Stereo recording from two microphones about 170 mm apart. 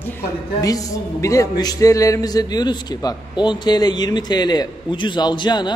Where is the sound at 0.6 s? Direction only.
20° left (ahead or behind).